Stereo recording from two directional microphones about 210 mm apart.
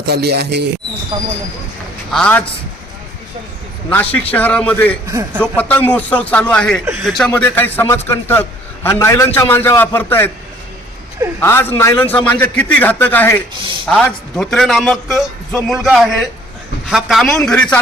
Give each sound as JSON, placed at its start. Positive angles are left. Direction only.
{"t": 0.0, "sound": "speech", "side_deg": -50}
{"t": 2.1, "sound": "a man's voice", "side_deg": 5}
{"t": 3.8, "sound": "a man's voice", "side_deg": 5}
{"t": 5.0, "sound": "a man's voice", "side_deg": -10}
{"t": 5.5, "sound": "a man's voice", "side_deg": 5}
{"t": 11.3, "sound": "a man's voice", "side_deg": 10}